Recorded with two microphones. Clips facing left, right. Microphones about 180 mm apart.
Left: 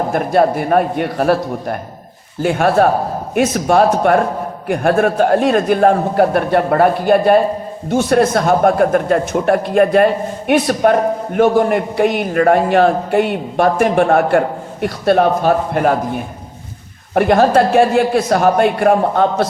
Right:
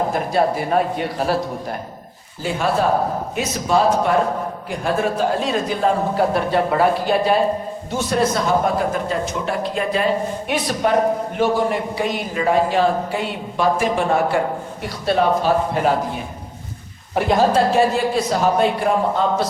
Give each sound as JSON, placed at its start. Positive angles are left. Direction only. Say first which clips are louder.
{"t": 0.1, "sound": "a man's voice", "louder": "left 5 dB", "side_deg": 55}